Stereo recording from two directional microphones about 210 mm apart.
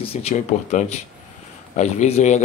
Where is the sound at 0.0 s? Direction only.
30° left (ahead or behind).